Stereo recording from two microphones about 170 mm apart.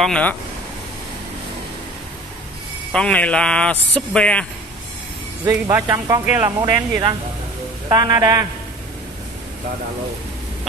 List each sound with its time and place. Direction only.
0.0 s speech: 5° left (ahead or behind)
2.9 s speech: 5° left (ahead or behind)
5.4 s a man's voice: 15° right (ahead or behind)